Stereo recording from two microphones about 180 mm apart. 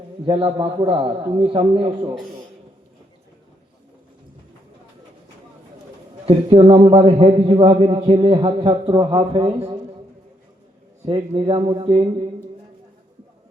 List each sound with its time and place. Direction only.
0.3 s a man's voice: 30° right (ahead or behind)
6.2 s a man's voice: 30° right (ahead or behind)
11.0 s a man's voice: 25° right (ahead or behind)